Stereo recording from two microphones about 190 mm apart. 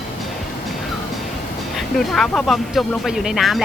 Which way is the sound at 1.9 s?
Centre (ahead or behind).